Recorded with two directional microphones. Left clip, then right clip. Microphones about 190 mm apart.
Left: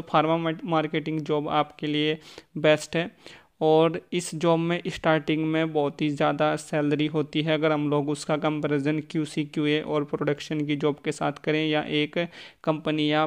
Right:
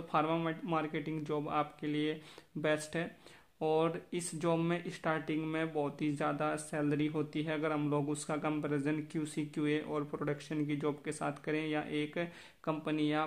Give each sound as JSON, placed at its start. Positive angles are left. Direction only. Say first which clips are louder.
{"t": 0.1, "sound": "speech", "louder": "left 10 dB", "side_deg": 35}